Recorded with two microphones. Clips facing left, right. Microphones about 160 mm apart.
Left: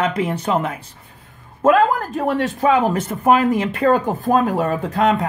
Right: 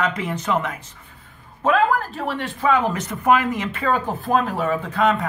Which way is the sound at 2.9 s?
30° left (ahead or behind).